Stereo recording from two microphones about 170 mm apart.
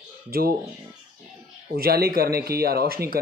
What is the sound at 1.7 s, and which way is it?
Speech, 65° right (ahead or behind).